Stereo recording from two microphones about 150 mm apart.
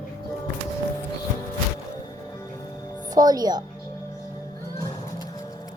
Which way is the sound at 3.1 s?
25° right (ahead or behind).